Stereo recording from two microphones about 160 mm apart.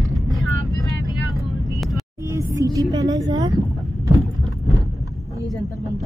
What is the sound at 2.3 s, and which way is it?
Speech, 20° right (ahead or behind).